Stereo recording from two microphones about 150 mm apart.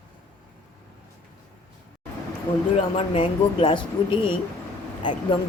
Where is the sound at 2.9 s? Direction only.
35° left (ahead or behind).